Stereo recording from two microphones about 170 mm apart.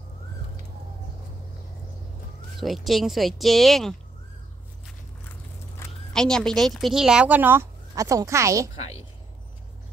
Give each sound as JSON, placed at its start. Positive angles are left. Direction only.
{"t": 2.6, "sound": "speech", "side_deg": 0}
{"t": 5.8, "sound": "zipper", "side_deg": 15}
{"t": 6.1, "sound": "speech", "side_deg": 5}